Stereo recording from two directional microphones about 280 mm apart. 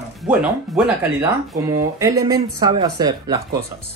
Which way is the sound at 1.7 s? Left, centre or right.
Centre.